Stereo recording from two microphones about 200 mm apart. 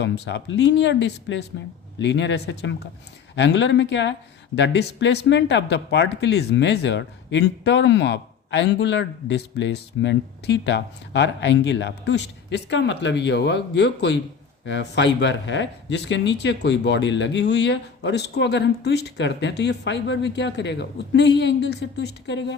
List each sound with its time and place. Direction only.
0.0 s speech: 60° left (ahead or behind)